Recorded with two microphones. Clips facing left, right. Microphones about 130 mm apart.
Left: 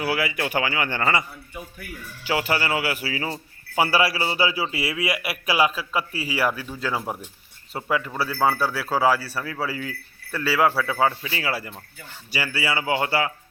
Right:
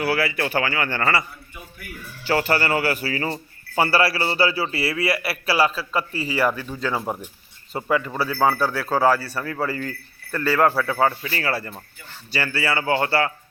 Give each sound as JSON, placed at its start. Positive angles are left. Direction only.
{"t": 0.0, "sound": "a man's voice", "side_deg": 15}
{"t": 2.2, "sound": "a man's voice", "side_deg": 10}